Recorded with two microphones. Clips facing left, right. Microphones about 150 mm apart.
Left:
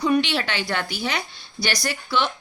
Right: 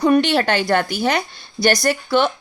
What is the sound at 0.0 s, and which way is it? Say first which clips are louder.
A woman's voice: right 6 dB; 50° right (ahead or behind).